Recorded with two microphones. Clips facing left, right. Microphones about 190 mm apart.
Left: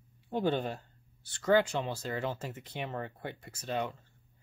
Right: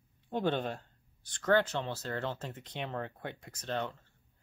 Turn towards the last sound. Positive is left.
turn(degrees=10)  # may be behind; listen again after turning